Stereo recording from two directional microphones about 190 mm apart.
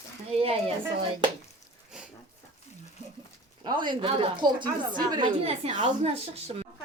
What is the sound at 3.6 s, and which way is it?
A woman's voice, 25° right (ahead or behind).